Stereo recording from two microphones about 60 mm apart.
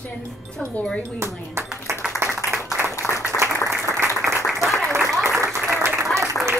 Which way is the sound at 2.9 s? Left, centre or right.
Left.